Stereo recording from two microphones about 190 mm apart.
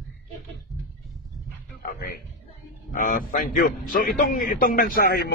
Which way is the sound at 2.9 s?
45° left (ahead or behind).